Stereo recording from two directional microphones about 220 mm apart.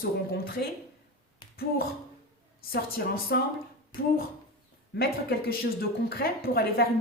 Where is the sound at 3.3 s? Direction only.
45° left (ahead or behind).